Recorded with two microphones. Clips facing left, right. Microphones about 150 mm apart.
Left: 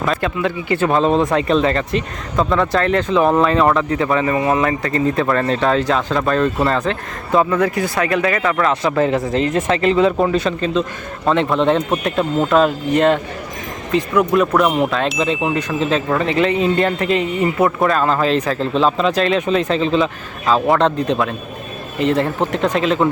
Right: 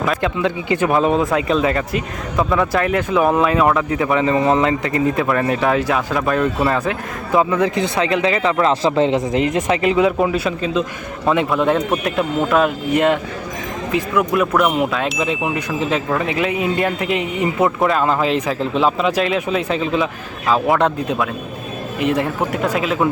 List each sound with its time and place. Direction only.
0.2 s speech: 15° right (ahead or behind)
11.4 s a man's voice: 20° left (ahead or behind)
12.0 s speech: 10° right (ahead or behind)
15.8 s speech: 15° right (ahead or behind)